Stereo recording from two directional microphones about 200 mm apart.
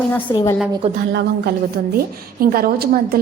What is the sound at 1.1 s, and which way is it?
A woman's voice, 55° right (ahead or behind).